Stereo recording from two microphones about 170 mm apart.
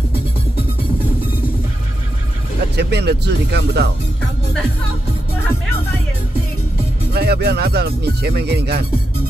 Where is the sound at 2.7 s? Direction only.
75° right (ahead or behind).